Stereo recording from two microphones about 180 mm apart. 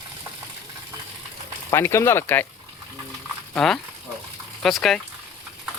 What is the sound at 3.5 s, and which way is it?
Speech, 5° left (ahead or behind).